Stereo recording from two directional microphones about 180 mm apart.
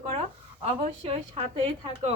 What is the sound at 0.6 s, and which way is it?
Speech, 30° right (ahead or behind).